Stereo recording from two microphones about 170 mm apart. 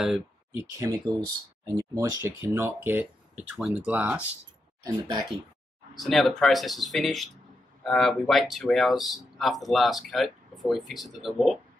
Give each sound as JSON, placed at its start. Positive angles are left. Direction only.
{"t": 0.6, "sound": "speech", "side_deg": -15}
{"t": 4.8, "sound": "speech", "side_deg": -25}
{"t": 5.9, "sound": "speech", "side_deg": 0}